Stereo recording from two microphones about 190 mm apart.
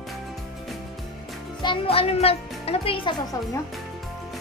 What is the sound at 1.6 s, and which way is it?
A child's voice, 25° left (ahead or behind).